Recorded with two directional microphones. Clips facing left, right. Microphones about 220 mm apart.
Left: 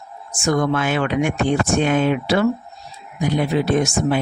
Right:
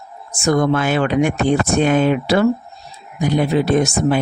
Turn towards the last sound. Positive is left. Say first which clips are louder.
# right 2 dB
turn(degrees=-40)  # may be behind; listen again after turning